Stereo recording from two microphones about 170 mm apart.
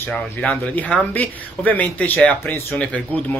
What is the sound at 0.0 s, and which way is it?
Speech, 10° left (ahead or behind).